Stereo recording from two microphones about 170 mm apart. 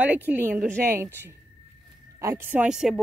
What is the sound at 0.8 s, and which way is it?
Speech, 15° right (ahead or behind).